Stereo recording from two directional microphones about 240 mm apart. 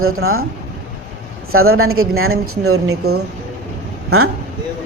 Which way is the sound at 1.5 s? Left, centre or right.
Right.